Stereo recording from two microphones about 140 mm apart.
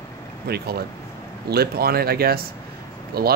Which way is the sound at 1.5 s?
90° right.